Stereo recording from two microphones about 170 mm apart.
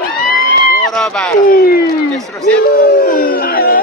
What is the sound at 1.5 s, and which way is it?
Speech, 60° left (ahead or behind).